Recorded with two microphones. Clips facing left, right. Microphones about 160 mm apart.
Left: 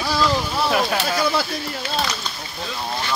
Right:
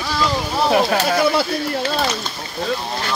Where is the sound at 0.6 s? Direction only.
30° right (ahead or behind).